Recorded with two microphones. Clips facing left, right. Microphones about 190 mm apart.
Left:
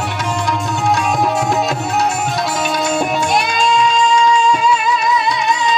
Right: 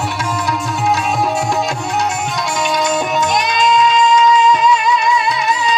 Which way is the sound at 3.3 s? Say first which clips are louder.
Right 1 dB; 30° left (ahead or behind).